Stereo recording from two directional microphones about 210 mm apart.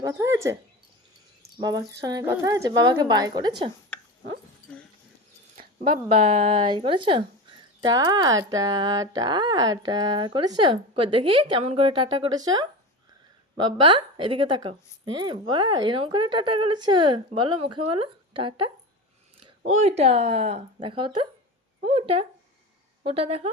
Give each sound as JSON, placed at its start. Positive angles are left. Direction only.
{"t": 0.0, "sound": "speech", "side_deg": -15}
{"t": 1.5, "sound": "a woman's voice", "side_deg": -20}
{"t": 4.6, "sound": "dog", "side_deg": 40}
{"t": 5.8, "sound": "a woman's voice", "side_deg": -30}